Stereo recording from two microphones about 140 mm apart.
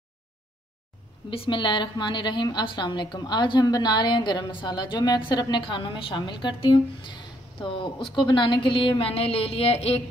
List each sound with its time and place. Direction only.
1.3 s a woman's voice: 40° left (ahead or behind)